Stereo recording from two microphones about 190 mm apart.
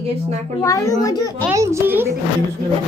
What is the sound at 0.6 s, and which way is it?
Speech, 20° left (ahead or behind).